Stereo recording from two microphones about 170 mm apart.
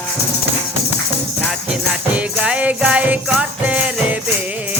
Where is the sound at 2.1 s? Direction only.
10° right (ahead or behind).